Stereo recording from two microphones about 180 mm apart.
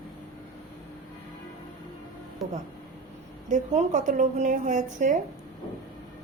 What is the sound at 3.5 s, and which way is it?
A woman's voice, 45° right (ahead or behind).